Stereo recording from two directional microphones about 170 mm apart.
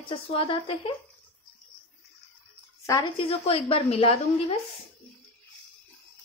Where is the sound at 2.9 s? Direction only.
30° left (ahead or behind).